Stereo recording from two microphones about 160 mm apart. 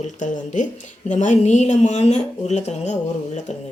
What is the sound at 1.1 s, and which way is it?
Speech, 50° left (ahead or behind).